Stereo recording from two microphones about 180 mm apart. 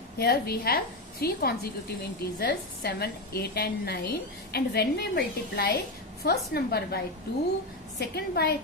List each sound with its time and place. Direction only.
0.2 s a woman's voice: 60° left (ahead or behind)
8.0 s a woman's voice: 65° left (ahead or behind)